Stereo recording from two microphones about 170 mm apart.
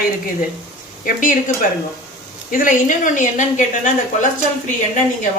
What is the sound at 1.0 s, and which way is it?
Speech, 50° left (ahead or behind).